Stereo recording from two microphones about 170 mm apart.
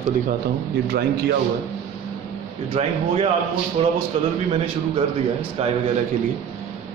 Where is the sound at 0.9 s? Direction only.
65° right (ahead or behind).